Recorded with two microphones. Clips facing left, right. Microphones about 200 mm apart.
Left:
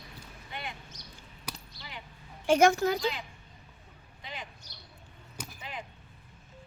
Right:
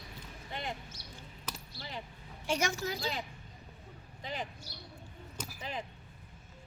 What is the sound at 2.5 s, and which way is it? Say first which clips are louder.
Speech: left 11 dB; 55° left (ahead or behind).